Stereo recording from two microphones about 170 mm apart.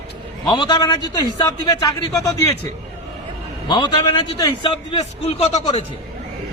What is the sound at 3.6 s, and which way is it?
A man's voice, 25° left (ahead or behind).